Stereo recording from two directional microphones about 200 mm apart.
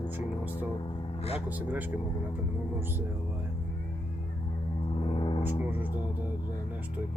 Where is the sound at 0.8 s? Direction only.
30° left (ahead or behind).